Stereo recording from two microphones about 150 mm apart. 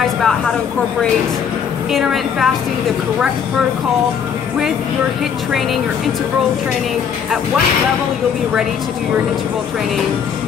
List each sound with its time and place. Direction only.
1.9 s a woman's voice: centre (ahead or behind)